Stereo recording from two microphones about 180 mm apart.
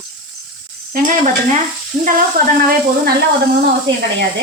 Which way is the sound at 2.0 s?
50° right (ahead or behind).